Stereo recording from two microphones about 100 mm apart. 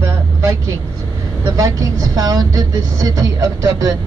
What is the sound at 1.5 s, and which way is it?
Speech, 40° right (ahead or behind).